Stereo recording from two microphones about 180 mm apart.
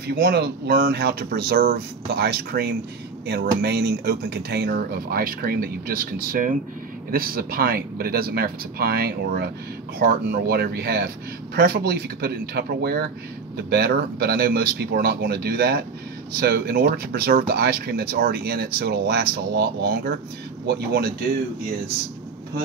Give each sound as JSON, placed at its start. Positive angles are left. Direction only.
{"t": 0.1, "sound": "speech", "side_deg": -60}